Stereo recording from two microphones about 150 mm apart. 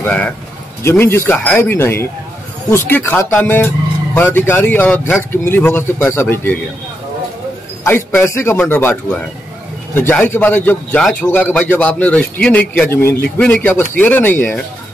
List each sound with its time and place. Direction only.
0.0 s a man's voice: 10° left (ahead or behind)
7.8 s a man's voice: 15° left (ahead or behind)